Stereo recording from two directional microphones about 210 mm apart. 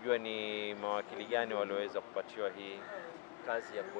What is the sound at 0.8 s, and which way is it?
Speech, 15° left (ahead or behind).